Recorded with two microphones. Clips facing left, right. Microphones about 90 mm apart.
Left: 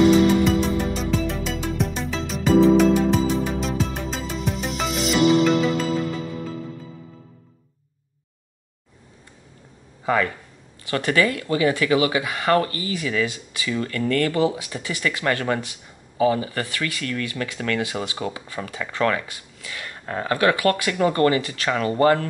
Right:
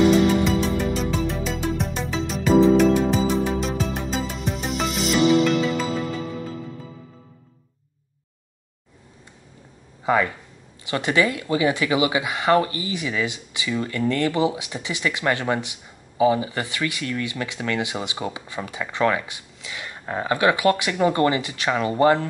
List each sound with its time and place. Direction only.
0.5 s music: centre (ahead or behind)
10.0 s speech: 15° right (ahead or behind)